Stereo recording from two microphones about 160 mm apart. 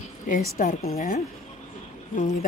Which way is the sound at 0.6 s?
55° left (ahead or behind).